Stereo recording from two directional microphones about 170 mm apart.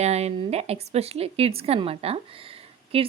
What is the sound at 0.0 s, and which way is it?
A woman's voice, 40° right (ahead or behind).